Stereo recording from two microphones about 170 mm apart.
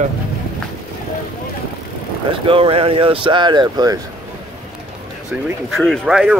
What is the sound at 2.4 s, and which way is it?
Speech, 30° right (ahead or behind).